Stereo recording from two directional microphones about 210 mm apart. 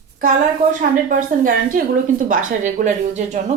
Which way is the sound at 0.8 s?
40° right (ahead or behind).